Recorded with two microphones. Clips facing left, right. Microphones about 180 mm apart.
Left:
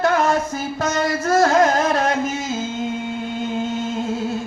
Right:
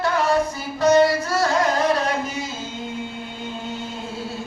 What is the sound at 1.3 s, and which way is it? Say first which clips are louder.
Music: left 5 dB; 45° left (ahead or behind).